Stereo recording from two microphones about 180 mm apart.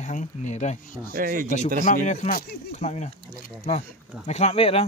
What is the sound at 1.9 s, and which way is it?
Speech, 45° left (ahead or behind).